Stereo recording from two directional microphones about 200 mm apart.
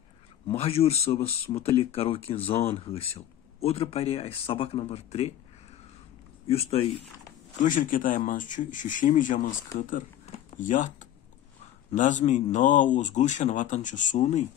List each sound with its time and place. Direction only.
0.6 s speech: 30° left (ahead or behind)
6.4 s speech: 30° left (ahead or behind)
7.6 s speech: 40° left (ahead or behind)